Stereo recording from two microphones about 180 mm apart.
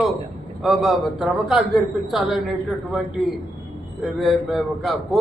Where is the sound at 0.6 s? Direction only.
Centre (ahead or behind).